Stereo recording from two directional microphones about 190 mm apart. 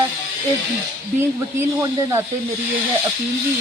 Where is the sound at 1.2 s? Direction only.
15° right (ahead or behind).